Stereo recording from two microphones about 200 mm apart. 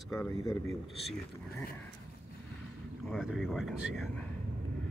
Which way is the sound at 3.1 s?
Centre (ahead or behind).